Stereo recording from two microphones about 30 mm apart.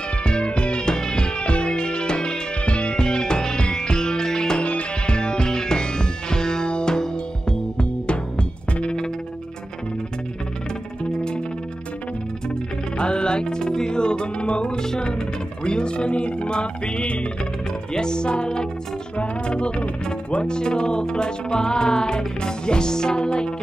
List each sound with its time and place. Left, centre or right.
0.2 s music: left
4.6 s music: left
7.7 s music: left
12.9 s music: left
15.0 s a sound: left
17.9 s speech: left
19.1 s a sound: left
20.4 s speech: left